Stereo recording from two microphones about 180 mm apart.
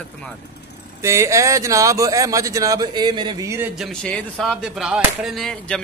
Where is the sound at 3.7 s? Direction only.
Centre (ahead or behind).